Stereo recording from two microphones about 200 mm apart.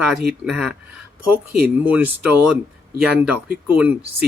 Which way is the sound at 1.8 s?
5° right (ahead or behind).